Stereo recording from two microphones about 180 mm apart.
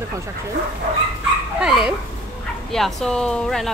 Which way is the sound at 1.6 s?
5° right (ahead or behind).